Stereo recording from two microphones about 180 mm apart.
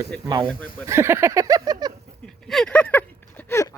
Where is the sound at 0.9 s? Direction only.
15° right (ahead or behind).